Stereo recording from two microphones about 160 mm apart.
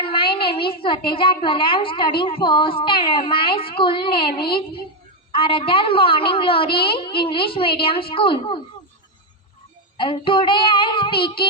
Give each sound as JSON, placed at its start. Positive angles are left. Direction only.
{"t": 0.0, "sound": "a woman's voice", "side_deg": 30}
{"t": 10.0, "sound": "a woman's voice", "side_deg": 30}